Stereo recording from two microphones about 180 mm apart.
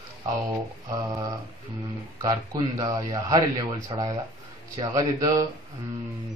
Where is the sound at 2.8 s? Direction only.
20° right (ahead or behind).